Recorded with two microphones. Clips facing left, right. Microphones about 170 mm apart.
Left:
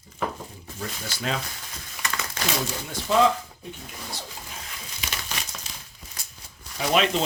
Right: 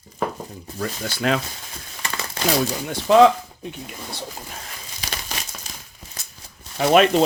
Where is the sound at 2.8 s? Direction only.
70° right (ahead or behind).